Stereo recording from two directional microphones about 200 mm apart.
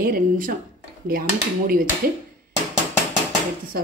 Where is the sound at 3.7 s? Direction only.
50° right (ahead or behind).